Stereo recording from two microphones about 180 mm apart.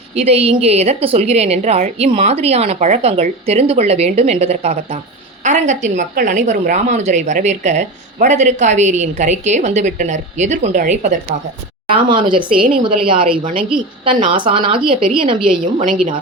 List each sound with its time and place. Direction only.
0.1 s speech: 35° right (ahead or behind)
11.9 s a woman's voice: 25° right (ahead or behind)
13.4 s a woman's voice: 50° right (ahead or behind)
14.0 s a woman's voice: 30° right (ahead or behind)
15.4 s a woman's voice: 50° right (ahead or behind)